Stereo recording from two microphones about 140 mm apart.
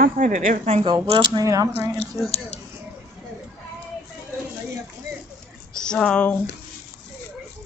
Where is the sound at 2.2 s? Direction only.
25° left (ahead or behind).